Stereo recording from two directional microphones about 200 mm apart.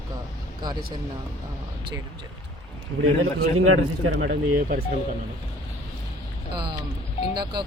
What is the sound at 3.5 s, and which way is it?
Speech, 90° right.